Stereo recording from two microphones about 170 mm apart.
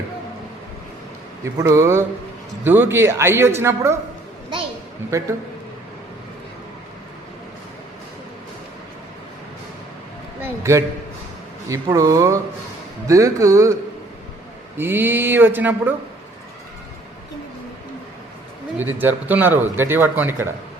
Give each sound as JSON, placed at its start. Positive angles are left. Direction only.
{"t": 1.5, "sound": "speech", "side_deg": -15}
{"t": 10.4, "sound": "speech", "side_deg": -15}
{"t": 14.8, "sound": "speech", "side_deg": -15}
{"t": 18.9, "sound": "speech", "side_deg": -10}